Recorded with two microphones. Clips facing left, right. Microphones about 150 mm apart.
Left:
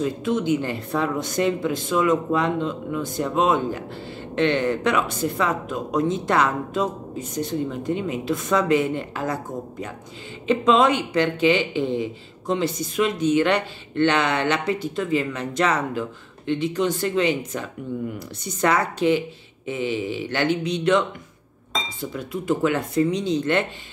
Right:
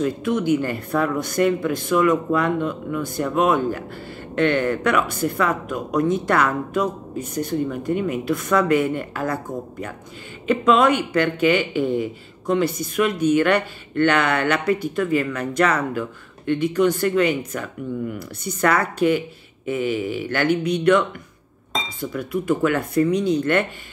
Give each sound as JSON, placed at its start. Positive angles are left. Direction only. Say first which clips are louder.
{"t": 0.0, "sound": "speech", "louder": "right 2 dB", "side_deg": 20}
{"t": 18.4, "sound": "speech", "louder": "right 1 dB", "side_deg": 20}